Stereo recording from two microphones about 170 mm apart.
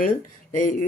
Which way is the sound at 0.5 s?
50° left (ahead or behind).